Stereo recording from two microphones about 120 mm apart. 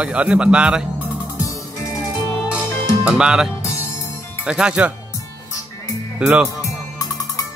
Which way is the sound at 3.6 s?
25° left (ahead or behind).